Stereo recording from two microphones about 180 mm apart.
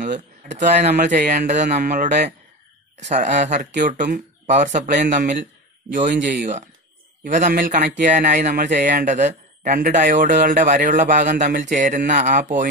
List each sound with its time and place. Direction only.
0.0 s speech: 45° right (ahead or behind)